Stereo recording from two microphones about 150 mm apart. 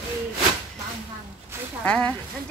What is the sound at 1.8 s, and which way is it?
Speech, 10° left (ahead or behind).